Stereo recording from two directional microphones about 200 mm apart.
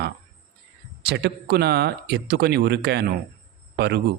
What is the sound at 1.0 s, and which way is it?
Speech, 55° right (ahead or behind).